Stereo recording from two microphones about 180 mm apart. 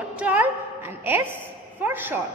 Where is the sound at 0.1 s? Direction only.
5° right (ahead or behind).